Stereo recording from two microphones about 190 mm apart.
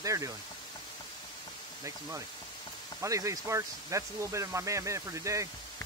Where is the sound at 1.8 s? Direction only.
15° right (ahead or behind).